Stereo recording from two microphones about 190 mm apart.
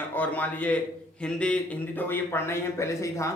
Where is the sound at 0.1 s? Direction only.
10° left (ahead or behind).